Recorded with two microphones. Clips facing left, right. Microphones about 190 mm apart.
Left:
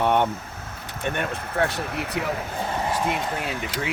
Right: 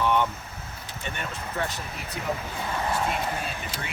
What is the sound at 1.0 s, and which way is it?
Speech, 55° left (ahead or behind).